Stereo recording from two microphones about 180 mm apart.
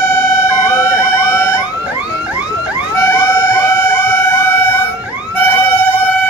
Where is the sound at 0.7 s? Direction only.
15° left (ahead or behind).